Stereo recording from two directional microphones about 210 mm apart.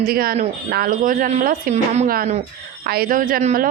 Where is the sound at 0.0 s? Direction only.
45° right (ahead or behind).